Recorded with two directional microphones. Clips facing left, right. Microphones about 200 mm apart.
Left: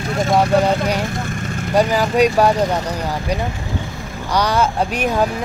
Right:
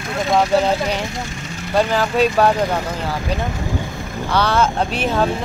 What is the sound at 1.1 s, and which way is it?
Vehicle, 55° left (ahead or behind).